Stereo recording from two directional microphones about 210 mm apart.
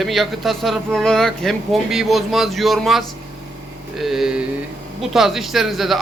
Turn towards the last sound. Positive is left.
turn(degrees=0)  # may be behind; listen again after turning